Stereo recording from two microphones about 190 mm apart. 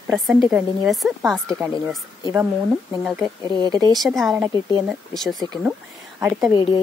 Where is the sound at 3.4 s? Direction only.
20° right (ahead or behind).